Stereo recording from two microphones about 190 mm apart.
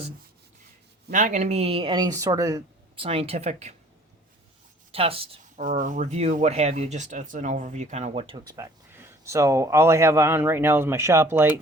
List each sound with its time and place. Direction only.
1.1 s speech: 40° right (ahead or behind)
4.9 s speech: 30° right (ahead or behind)
5.6 s speech: 45° right (ahead or behind)
8.5 s a man's voice: 15° right (ahead or behind)